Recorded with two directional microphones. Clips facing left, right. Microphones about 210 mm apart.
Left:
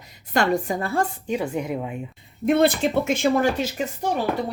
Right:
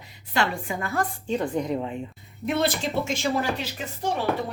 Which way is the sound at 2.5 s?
55° left (ahead or behind).